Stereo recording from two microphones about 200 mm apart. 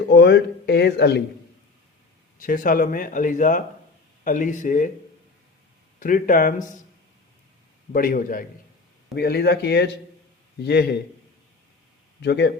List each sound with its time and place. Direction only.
0.1 s speech: 55° left (ahead or behind)
2.4 s speech: 45° left (ahead or behind)
6.0 s speech: 40° left (ahead or behind)
7.9 s a man's voice: 45° left (ahead or behind)
12.2 s speech: 55° left (ahead or behind)